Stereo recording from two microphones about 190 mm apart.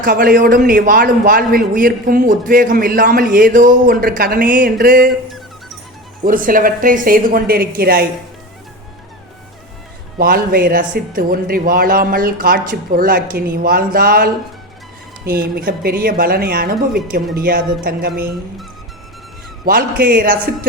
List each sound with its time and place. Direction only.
0.0 s a man's voice: 45° right (ahead or behind)
6.2 s a man's voice: 45° right (ahead or behind)
10.2 s a man's voice: 50° right (ahead or behind)
19.6 s a man's voice: 45° right (ahead or behind)